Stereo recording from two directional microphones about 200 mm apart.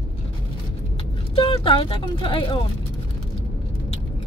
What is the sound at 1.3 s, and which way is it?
Speech, 25° left (ahead or behind).